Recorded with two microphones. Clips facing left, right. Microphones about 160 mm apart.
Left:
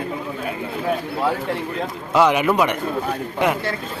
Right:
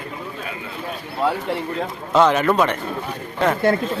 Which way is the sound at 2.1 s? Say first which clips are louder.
Right 1 dB; 10° left (ahead or behind).